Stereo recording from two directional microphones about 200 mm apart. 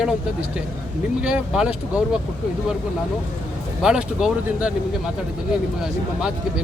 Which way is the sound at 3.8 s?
5° right (ahead or behind).